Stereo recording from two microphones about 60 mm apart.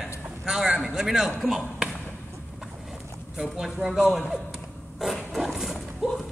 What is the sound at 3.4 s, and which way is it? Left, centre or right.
Speech, centre.